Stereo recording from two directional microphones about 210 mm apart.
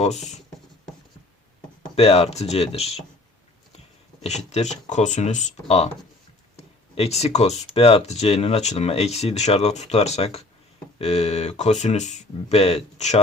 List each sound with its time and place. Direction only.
0.0 s speech: 30° left (ahead or behind)
2.0 s speech: 30° left (ahead or behind)
4.2 s speech: 30° left (ahead or behind)